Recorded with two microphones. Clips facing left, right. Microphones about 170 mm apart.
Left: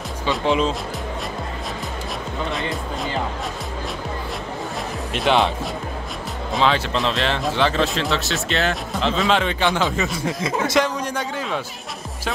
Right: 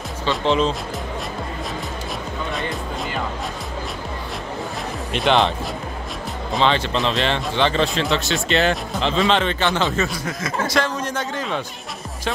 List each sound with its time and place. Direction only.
0.3 s speech: 5° left (ahead or behind)
5.1 s speech: centre (ahead or behind)
6.5 s speech: 5° left (ahead or behind)
10.1 s speech: 25° left (ahead or behind)
11.0 s a man's voice: 10° left (ahead or behind)